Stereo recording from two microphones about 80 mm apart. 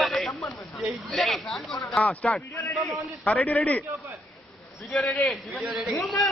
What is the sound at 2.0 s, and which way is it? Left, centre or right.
Speech, centre.